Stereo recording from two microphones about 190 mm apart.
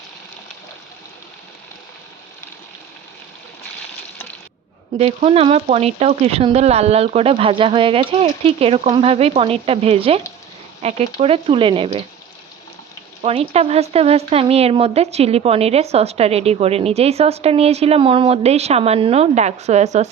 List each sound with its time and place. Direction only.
4.9 s speech: 35° right (ahead or behind)
13.2 s speech: 30° right (ahead or behind)